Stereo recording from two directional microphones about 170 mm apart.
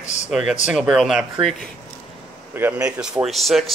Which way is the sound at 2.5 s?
10° right (ahead or behind).